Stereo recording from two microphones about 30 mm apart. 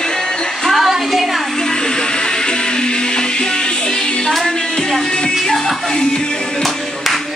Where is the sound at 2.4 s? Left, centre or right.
Left.